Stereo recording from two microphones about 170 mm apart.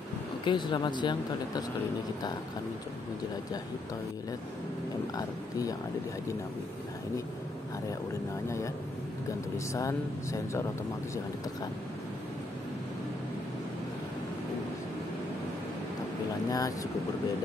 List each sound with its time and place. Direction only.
0.5 s speech: 25° left (ahead or behind)
5.1 s speech: 20° left (ahead or behind)
9.8 s speech: 20° left (ahead or behind)
16.4 s speech: 20° left (ahead or behind)